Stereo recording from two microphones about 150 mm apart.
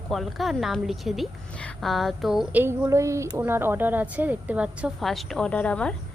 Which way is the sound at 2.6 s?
20° right (ahead or behind).